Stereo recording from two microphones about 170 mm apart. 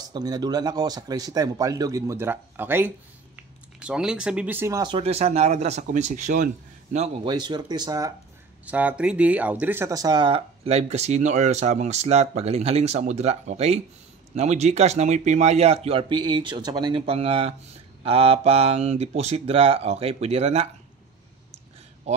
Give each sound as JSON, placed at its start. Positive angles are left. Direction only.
{"t": 0.1, "sound": "speech", "side_deg": -25}
{"t": 7.2, "sound": "speech", "side_deg": -25}
{"t": 8.6, "sound": "speech", "side_deg": -10}
{"t": 22.1, "sound": "a sound", "side_deg": -40}